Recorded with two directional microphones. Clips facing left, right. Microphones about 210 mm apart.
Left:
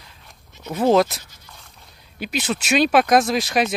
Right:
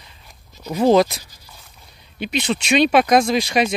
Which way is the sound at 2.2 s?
5° left (ahead or behind).